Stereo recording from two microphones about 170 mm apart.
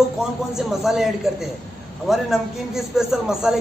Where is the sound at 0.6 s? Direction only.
Centre (ahead or behind).